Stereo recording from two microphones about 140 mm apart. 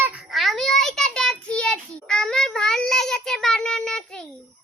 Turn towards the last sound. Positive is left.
turn(degrees=5)  # may be behind; listen again after turning